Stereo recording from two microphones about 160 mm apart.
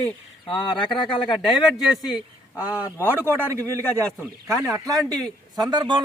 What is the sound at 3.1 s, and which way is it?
A man's voice, 10° right (ahead or behind).